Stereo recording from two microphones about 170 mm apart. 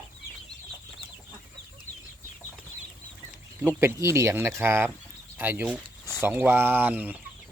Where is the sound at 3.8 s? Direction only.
15° right (ahead or behind).